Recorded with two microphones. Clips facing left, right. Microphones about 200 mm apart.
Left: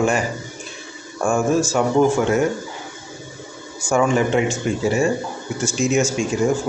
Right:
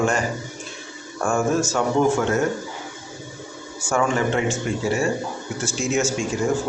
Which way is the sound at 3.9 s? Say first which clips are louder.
Left 4 dB; 15° left (ahead or behind).